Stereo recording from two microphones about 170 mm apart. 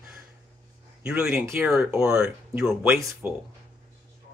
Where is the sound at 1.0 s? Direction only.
5° right (ahead or behind).